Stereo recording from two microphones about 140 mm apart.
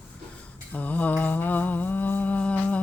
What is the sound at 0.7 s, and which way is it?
Mantra, 10° left (ahead or behind).